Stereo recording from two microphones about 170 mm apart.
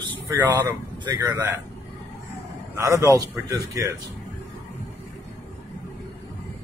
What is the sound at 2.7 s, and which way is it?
Speech, 15° right (ahead or behind).